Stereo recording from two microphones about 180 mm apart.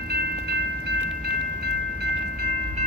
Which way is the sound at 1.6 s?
65° right (ahead or behind).